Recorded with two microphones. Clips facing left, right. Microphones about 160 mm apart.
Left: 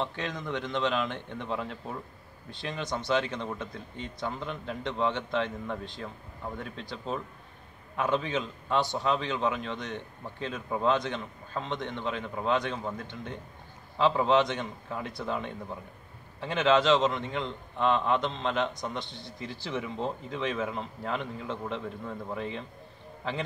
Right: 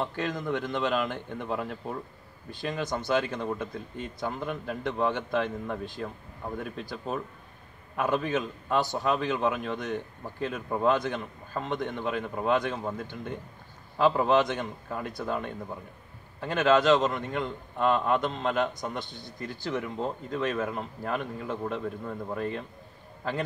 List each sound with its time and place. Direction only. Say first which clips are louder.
0.0 s a man's voice: right 3 dB; 5° right (ahead or behind)